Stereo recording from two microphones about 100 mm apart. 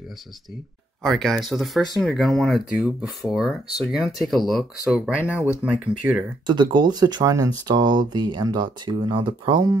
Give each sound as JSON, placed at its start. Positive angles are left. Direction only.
{"t": 1.0, "sound": "speech", "side_deg": 0}
{"t": 6.4, "sound": "speech", "side_deg": -50}